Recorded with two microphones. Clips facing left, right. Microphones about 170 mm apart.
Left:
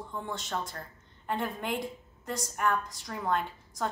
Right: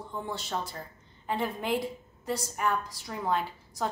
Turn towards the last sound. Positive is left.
turn(degrees=-5)  # may be behind; listen again after turning